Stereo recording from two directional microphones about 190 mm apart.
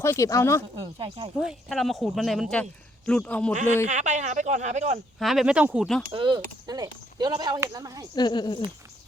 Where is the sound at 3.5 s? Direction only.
40° right (ahead or behind).